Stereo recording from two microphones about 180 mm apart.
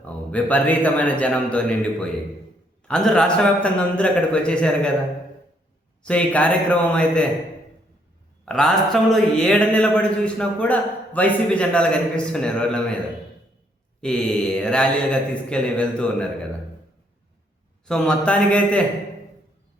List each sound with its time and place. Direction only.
0.0 s a man's voice: 10° left (ahead or behind)
6.0 s a man's voice: 5° left (ahead or behind)
8.4 s speech: 5° left (ahead or behind)
14.0 s speech: 5° left (ahead or behind)
17.8 s speech: 5° left (ahead or behind)